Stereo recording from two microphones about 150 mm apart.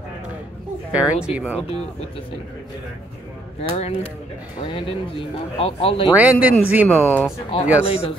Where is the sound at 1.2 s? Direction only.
10° right (ahead or behind).